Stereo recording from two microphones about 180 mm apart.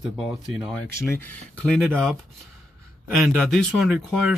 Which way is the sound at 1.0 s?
10° left (ahead or behind).